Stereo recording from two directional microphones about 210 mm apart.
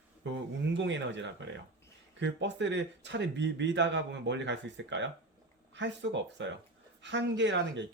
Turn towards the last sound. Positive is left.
turn(degrees=-60)  # may be behind; listen again after turning